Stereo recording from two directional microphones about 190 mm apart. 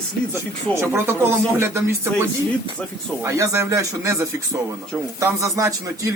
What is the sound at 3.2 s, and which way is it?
A man's voice, 15° right (ahead or behind).